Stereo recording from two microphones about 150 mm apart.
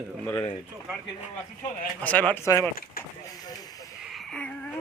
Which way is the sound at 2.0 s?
10° left (ahead or behind).